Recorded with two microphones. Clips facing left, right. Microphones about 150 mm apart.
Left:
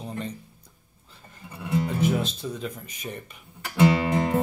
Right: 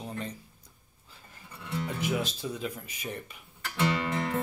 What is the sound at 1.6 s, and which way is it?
Speech, 50° left (ahead or behind).